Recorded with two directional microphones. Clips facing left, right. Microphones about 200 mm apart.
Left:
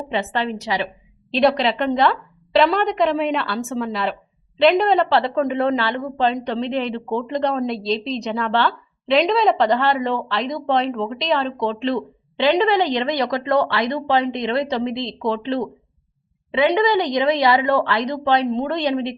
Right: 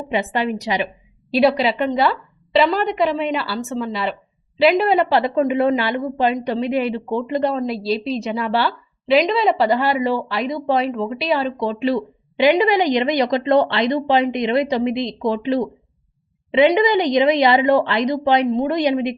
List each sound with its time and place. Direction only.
0.1 s a woman's voice: 15° right (ahead or behind)
1.3 s a woman's voice: 5° right (ahead or behind)